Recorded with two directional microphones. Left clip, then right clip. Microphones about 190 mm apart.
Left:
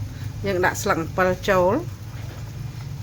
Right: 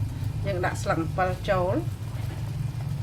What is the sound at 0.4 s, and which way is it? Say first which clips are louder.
Speech: left 7 dB; 50° left (ahead or behind).